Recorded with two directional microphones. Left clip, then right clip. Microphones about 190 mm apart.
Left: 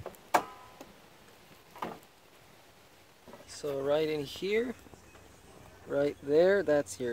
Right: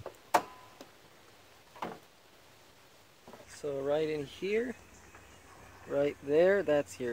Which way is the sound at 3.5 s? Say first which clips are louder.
Left 2 dB; centre (ahead or behind).